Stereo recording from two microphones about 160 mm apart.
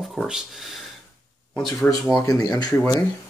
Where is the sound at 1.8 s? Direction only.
Centre (ahead or behind).